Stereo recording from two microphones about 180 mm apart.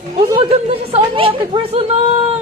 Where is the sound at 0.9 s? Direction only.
30° right (ahead or behind).